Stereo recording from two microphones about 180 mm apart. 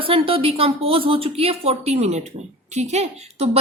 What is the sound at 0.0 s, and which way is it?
A woman's voice, 30° right (ahead or behind).